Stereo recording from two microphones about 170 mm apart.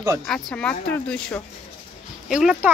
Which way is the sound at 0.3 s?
5° left (ahead or behind).